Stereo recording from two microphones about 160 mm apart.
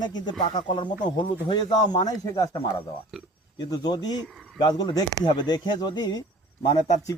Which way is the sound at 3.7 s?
25° left (ahead or behind).